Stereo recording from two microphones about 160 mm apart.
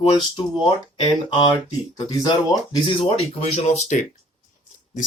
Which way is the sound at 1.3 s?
25° left (ahead or behind).